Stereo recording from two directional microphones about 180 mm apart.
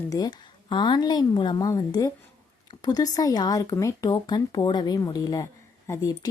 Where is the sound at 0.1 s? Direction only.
20° left (ahead or behind).